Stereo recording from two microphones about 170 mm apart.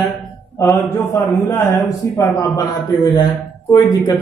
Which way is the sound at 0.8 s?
15° left (ahead or behind).